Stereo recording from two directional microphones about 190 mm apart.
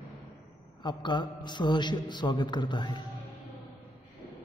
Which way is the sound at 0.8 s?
25° left (ahead or behind).